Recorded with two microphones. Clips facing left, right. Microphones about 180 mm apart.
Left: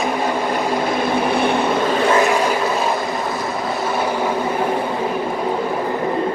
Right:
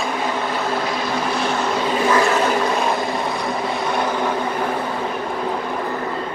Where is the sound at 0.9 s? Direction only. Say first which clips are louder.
Left 4 dB; 55° left (ahead or behind).